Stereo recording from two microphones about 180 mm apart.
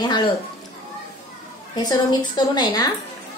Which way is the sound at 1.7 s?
20° left (ahead or behind).